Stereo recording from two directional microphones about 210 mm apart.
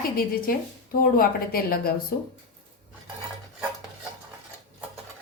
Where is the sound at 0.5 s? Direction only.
45° left (ahead or behind).